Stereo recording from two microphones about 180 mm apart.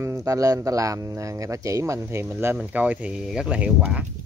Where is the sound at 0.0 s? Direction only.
15° right (ahead or behind).